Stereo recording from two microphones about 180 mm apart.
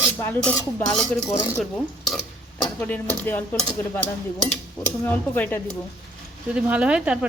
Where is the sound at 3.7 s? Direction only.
10° left (ahead or behind).